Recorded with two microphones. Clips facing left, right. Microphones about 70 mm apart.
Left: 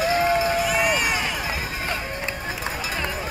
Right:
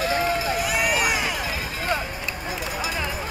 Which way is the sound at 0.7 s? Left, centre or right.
Centre.